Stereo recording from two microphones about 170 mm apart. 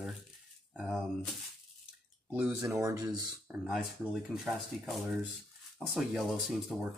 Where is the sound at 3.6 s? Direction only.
Centre (ahead or behind).